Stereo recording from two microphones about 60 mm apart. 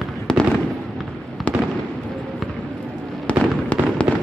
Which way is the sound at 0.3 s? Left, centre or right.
Centre.